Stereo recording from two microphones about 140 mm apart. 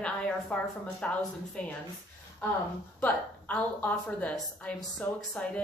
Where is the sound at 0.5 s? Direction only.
10° left (ahead or behind).